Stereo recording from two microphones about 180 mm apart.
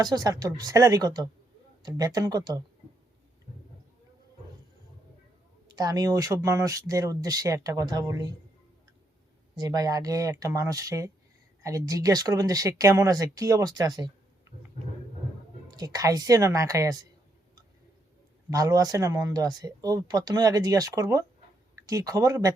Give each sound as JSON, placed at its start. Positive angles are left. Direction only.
{"t": 0.0, "sound": "speech", "side_deg": -20}
{"t": 5.6, "sound": "speech", "side_deg": -20}
{"t": 9.6, "sound": "speech", "side_deg": -20}
{"t": 15.7, "sound": "speech", "side_deg": -20}
{"t": 18.5, "sound": "speech", "side_deg": -20}